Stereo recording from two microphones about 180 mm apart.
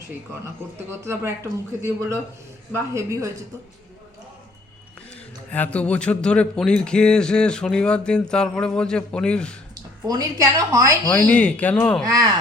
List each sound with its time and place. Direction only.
0.9 s speech: 15° right (ahead or behind)
5.5 s speech: 10° left (ahead or behind)
9.7 s a woman's voice: 20° right (ahead or behind)
11.1 s speech: 10° left (ahead or behind)